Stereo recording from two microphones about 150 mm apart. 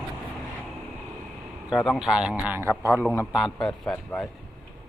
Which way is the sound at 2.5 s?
15° right (ahead or behind).